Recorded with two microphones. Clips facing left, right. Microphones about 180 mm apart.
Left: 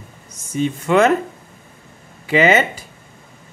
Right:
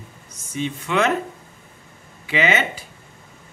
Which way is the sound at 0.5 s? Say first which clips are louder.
Left 7 dB; 45° left (ahead or behind).